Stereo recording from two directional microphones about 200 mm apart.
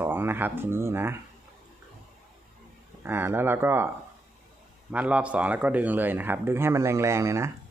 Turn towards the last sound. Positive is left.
turn(degrees=-15)  # may be behind; listen again after turning